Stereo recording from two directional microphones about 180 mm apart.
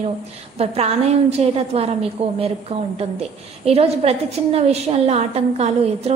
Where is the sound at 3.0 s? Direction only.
35° right (ahead or behind).